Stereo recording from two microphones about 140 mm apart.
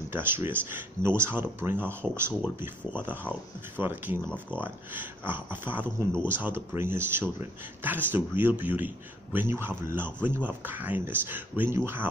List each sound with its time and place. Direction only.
0.1 s a man's voice: 15° right (ahead or behind)
4.3 s speech: 10° left (ahead or behind)
4.6 s a man's voice: 15° right (ahead or behind)